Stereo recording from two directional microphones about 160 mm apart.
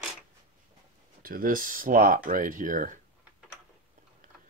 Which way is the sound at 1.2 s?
65° right (ahead or behind).